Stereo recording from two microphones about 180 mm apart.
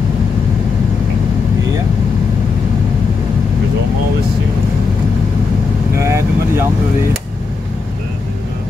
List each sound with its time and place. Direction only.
5.9 s vehicle: 15° right (ahead or behind)